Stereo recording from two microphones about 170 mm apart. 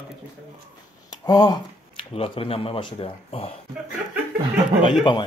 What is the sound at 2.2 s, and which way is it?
Speech, 35° left (ahead or behind).